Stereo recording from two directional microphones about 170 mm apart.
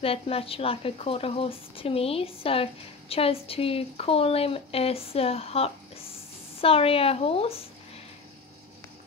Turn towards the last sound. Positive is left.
turn(degrees=35)  # may be behind; listen again after turning